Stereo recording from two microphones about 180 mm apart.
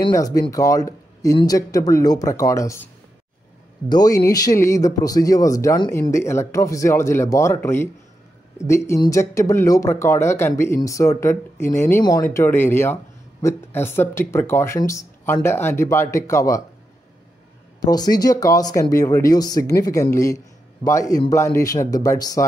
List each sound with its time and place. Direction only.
0.1 s speech: 20° left (ahead or behind)
3.9 s speech: 20° left (ahead or behind)
17.8 s speech: 20° left (ahead or behind)